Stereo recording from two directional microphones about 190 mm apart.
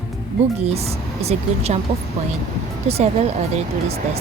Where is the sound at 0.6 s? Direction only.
35° right (ahead or behind).